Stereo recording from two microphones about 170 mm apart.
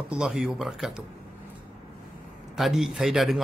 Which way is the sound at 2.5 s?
Centre (ahead or behind).